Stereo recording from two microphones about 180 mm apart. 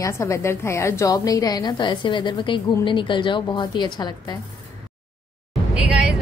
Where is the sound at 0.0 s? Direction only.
15° left (ahead or behind).